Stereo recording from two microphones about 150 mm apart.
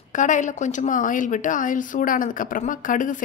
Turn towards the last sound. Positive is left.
turn(degrees=60)  # may be behind; listen again after turning